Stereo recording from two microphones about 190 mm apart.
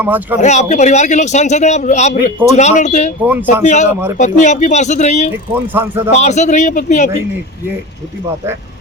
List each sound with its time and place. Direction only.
0.0 s speech: 10° right (ahead or behind)
0.4 s a man's voice: 35° left (ahead or behind)
5.5 s speech: 10° right (ahead or behind)
6.1 s a man's voice: 35° left (ahead or behind)